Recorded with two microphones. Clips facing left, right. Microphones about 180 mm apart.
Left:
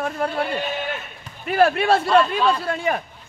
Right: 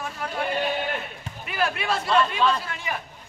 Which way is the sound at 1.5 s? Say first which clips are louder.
Left 9 dB; 50° left (ahead or behind).